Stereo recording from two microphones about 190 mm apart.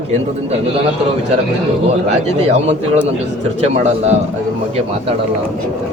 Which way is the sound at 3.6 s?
35° right (ahead or behind).